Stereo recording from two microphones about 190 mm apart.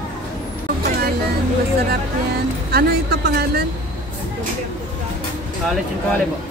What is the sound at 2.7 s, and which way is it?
Speech, 55° right (ahead or behind).